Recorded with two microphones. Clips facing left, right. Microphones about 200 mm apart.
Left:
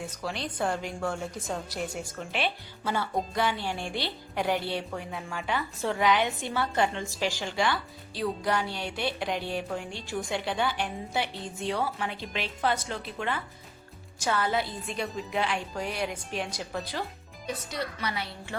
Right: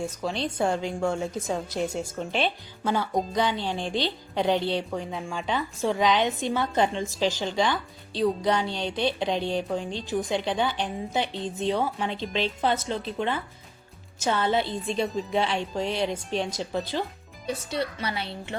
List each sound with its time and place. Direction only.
0.1 s a woman's voice: 25° right (ahead or behind)
2.8 s music: 15° right (ahead or behind)
3.3 s a woman's voice: 20° right (ahead or behind)
15.0 s speech: centre (ahead or behind)
15.3 s a woman's voice: 25° right (ahead or behind)